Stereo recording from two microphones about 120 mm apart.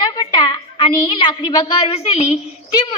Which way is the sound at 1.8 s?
55° left (ahead or behind).